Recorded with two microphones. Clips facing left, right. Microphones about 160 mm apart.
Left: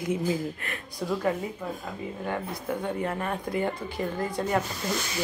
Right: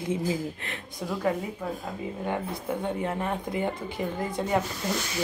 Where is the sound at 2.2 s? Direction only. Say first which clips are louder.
Right 1 dB; 20° right (ahead or behind).